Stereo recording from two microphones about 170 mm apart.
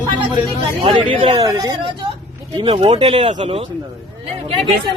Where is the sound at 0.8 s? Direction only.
30° right (ahead or behind).